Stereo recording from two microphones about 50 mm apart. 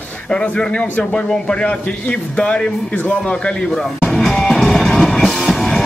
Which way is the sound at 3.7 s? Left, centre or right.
Centre.